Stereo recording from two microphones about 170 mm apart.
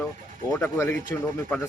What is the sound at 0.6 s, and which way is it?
Speech, 15° left (ahead or behind).